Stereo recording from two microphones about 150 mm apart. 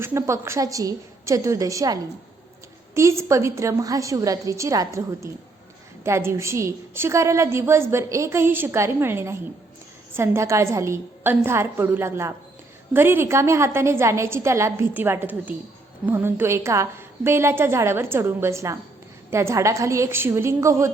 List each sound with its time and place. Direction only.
0.0 s a woman's voice: 15° right (ahead or behind)